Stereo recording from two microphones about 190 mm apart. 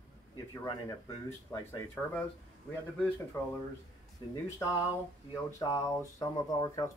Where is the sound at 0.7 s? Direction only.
20° left (ahead or behind).